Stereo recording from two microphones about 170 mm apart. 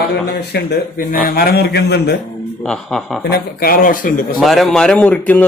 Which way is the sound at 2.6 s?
5° left (ahead or behind).